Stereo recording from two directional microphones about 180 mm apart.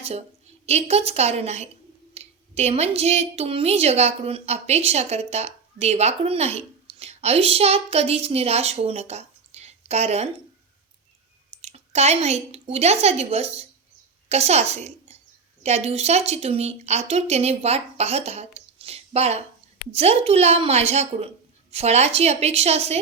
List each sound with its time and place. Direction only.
0.6 s a woman's voice: 35° right (ahead or behind)
11.6 s a woman's voice: 35° right (ahead or behind)